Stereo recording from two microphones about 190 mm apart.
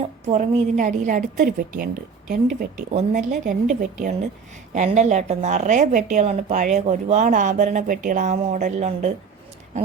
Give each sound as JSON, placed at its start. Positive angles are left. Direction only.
{"t": 0.0, "sound": "speech", "side_deg": -35}